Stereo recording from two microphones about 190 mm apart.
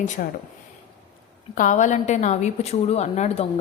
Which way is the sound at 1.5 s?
40° left (ahead or behind).